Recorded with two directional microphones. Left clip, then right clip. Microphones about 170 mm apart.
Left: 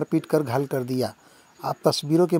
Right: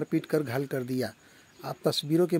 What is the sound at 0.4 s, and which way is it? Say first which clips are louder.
Speech: left 6 dB; 5° left (ahead or behind).